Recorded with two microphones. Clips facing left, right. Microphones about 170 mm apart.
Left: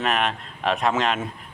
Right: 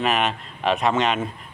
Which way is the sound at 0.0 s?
Centre (ahead or behind).